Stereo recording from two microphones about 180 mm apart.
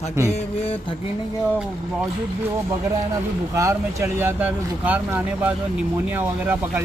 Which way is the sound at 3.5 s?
15° right (ahead or behind).